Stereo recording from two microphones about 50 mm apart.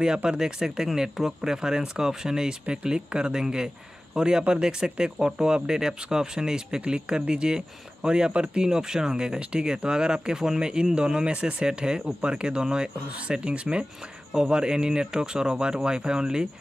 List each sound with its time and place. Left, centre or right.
0.0 s speech: centre